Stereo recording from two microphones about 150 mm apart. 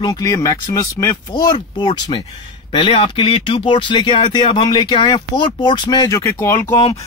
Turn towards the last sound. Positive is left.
turn(degrees=20)  # may be behind; listen again after turning